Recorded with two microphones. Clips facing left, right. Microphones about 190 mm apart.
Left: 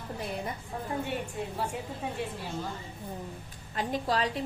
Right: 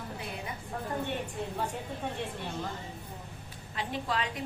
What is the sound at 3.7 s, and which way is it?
Speech, 40° left (ahead or behind).